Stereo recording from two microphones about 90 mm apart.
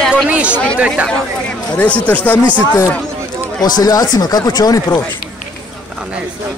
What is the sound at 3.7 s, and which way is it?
Speech, 45° left (ahead or behind).